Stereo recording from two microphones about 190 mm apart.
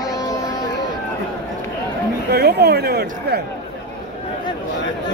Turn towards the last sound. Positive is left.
turn(degrees=-55)  # may be behind; listen again after turning